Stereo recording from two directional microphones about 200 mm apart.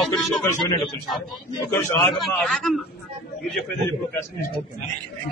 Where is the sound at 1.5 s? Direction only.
20° left (ahead or behind).